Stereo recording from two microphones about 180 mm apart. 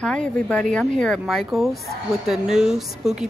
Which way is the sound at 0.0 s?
5° left (ahead or behind).